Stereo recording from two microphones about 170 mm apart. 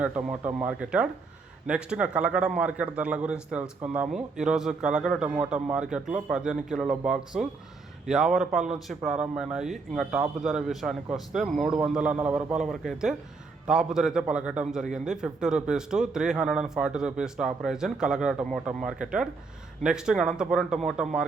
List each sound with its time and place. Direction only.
0.0 s a man's voice: 10° right (ahead or behind)